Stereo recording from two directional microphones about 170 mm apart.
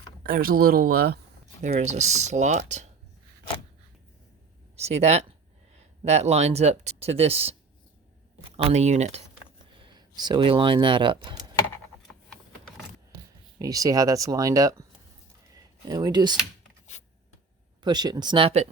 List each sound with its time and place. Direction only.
0.2 s speech: 60° right (ahead or behind)
1.6 s speech: 45° right (ahead or behind)
4.8 s speech: 40° right (ahead or behind)
8.5 s speech: 40° right (ahead or behind)
9.8 s speech: 25° right (ahead or behind)
12.3 s a sound: centre (ahead or behind)
13.6 s speech: 20° right (ahead or behind)
17.8 s speech: 25° right (ahead or behind)